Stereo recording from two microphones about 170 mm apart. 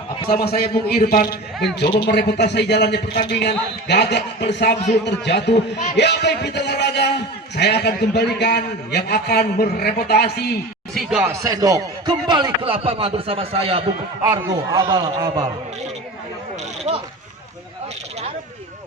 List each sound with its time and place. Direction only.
0.3 s a man's voice: 65° left (ahead or behind)
2.0 s a man's voice: 75° left (ahead or behind)
10.9 s speech: 5° right (ahead or behind)
11.3 s speech: 20° right (ahead or behind)
14.3 s speech: 20° right (ahead or behind)
16.9 s a sound: 40° right (ahead or behind)